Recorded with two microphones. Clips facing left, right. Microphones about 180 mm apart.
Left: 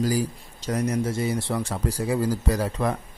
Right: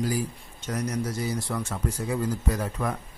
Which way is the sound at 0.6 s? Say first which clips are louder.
Left 4 dB; 30° left (ahead or behind).